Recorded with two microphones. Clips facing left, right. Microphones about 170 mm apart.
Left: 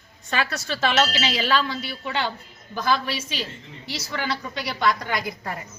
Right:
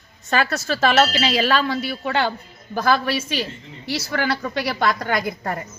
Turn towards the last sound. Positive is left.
turn(degrees=-50)  # may be behind; listen again after turning